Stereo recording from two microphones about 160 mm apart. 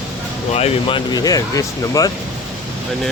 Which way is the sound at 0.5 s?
40° left (ahead or behind).